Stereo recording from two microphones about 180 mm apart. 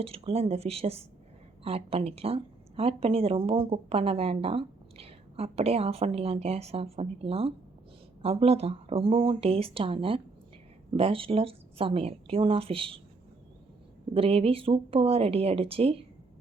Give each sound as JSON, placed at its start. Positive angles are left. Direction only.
{"t": 0.0, "sound": "a woman's voice", "side_deg": -35}
{"t": 14.1, "sound": "a woman's voice", "side_deg": -30}